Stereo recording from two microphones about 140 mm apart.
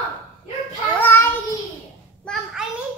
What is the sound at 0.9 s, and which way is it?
Child singing, 15° left (ahead or behind).